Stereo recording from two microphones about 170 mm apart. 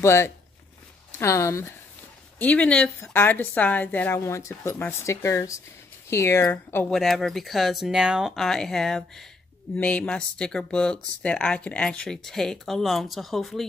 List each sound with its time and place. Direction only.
0.0 s a woman's voice: 15° left (ahead or behind)